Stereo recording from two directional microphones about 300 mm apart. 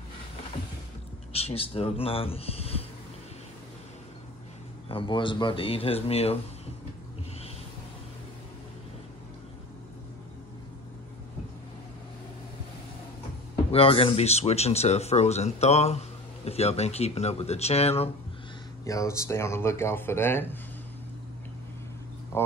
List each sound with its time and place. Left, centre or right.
1.3 s speech: centre
4.8 s speech: centre
13.7 s speech: centre
22.3 s speech: centre